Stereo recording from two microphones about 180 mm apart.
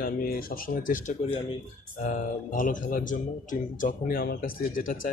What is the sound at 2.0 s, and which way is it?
A man's voice, 45° left (ahead or behind).